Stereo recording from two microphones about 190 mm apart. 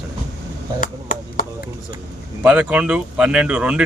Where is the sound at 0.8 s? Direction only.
45° left (ahead or behind).